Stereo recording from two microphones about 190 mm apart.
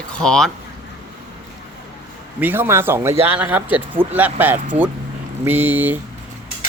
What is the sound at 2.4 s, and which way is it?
Speech, 10° right (ahead or behind).